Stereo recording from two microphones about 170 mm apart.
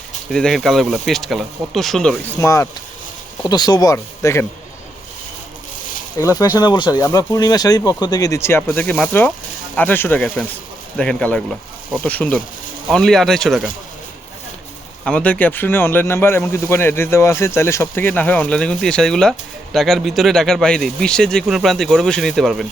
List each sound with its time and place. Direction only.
0.3 s speech: 5° left (ahead or behind)
2.4 s speech: 15° left (ahead or behind)
6.1 s speech: 20° left (ahead or behind); by 13.7 s centre (ahead or behind)
15.0 s speech: 5° left (ahead or behind)